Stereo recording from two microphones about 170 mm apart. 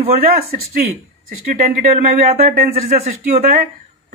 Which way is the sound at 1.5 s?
55° right (ahead or behind).